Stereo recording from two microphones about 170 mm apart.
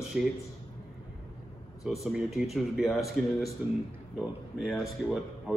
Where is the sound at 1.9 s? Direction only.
Centre (ahead or behind).